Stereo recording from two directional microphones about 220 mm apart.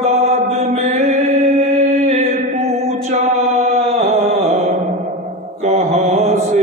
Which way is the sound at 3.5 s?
30° right (ahead or behind).